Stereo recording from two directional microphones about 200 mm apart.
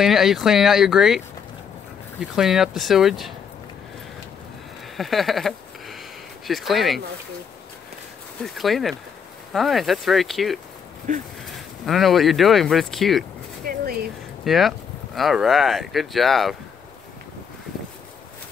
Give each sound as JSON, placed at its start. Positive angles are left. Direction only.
{"t": 0.0, "sound": "speech", "side_deg": 0}
{"t": 2.3, "sound": "speech", "side_deg": 0}
{"t": 4.9, "sound": "a sound", "side_deg": 0}
{"t": 6.4, "sound": "speech", "side_deg": 0}
{"t": 8.5, "sound": "speech", "side_deg": 0}
{"t": 11.1, "sound": "speech", "side_deg": -40}
{"t": 11.4, "sound": "speech", "side_deg": 0}
{"t": 13.7, "sound": "a sound", "side_deg": -45}
{"t": 14.4, "sound": "speech", "side_deg": 0}